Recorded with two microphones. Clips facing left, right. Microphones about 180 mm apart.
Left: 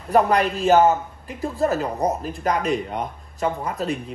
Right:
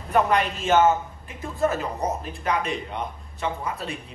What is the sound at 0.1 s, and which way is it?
Speech, 35° left (ahead or behind).